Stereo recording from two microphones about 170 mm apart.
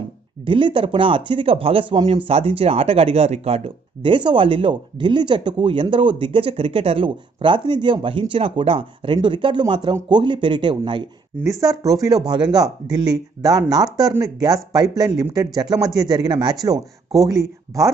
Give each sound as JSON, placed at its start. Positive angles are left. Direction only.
{"t": 0.5, "sound": "speech", "side_deg": -30}